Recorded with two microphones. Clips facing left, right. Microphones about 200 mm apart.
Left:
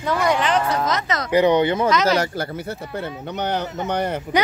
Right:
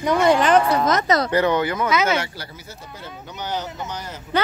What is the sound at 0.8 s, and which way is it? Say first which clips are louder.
Speech: right 4 dB; 50° right (ahead or behind).